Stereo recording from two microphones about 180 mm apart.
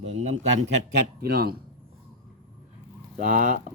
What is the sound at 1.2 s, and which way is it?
Speech, 60° right (ahead or behind).